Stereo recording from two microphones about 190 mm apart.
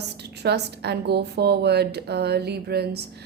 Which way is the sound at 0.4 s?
60° right (ahead or behind).